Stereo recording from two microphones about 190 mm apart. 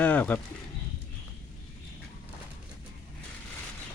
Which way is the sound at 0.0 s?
10° left (ahead or behind).